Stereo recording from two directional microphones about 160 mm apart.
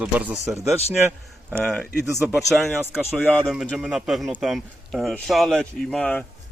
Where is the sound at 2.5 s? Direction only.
Centre (ahead or behind).